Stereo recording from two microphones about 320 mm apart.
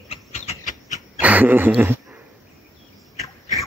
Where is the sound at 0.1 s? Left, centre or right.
Left.